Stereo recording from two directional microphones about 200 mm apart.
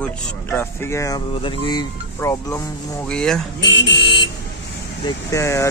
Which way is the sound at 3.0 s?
5° left (ahead or behind).